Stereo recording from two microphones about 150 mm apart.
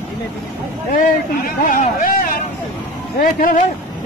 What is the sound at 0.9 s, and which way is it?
Speech, 70° left (ahead or behind).